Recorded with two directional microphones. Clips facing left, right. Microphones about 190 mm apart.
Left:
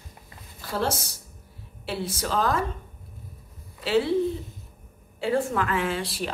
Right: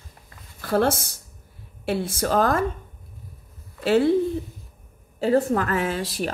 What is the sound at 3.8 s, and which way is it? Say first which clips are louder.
Speech: right 5 dB; 50° right (ahead or behind).